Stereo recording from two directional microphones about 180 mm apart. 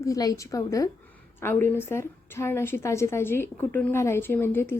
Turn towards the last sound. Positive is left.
turn(degrees=10)  # may be behind; listen again after turning